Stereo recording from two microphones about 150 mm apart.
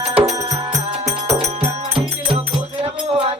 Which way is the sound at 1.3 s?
45° right (ahead or behind).